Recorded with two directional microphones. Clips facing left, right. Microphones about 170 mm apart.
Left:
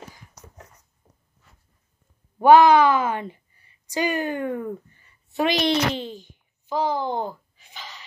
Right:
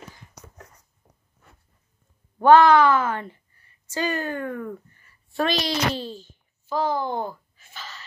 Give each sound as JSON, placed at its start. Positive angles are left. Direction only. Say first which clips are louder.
{"t": 2.3, "sound": "a woman's voice", "louder": "left 1 dB", "side_deg": 10}